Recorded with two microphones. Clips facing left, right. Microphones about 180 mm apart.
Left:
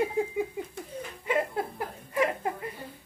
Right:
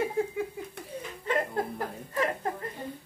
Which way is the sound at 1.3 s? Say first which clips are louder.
Even; 10° left (ahead or behind).